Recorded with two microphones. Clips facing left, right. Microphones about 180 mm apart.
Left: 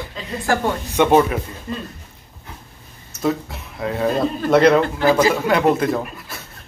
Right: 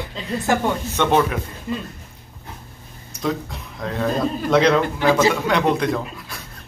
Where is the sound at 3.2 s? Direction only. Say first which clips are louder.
Left 3 dB; 5° left (ahead or behind).